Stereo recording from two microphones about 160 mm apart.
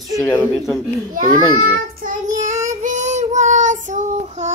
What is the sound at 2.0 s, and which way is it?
Child singing, 55° right (ahead or behind).